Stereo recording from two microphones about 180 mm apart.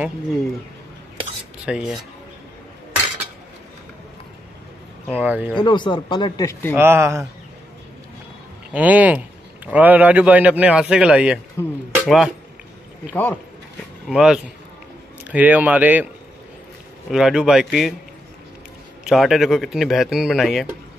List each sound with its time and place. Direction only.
1.7 s speech: 5° right (ahead or behind)
5.0 s a man's voice: 10° right (ahead or behind)
5.6 s speech: 25° left (ahead or behind)
6.7 s a man's voice: 10° right (ahead or behind)
8.7 s a man's voice: 10° right (ahead or behind)
11.6 s speech: 15° left (ahead or behind)
13.1 s speech: 10° left (ahead or behind)
14.0 s a man's voice: 5° right (ahead or behind)
17.1 s speech: 5° right (ahead or behind)
19.0 s speech: centre (ahead or behind)